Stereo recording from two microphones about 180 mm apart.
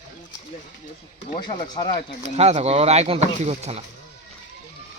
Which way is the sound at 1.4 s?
25° left (ahead or behind).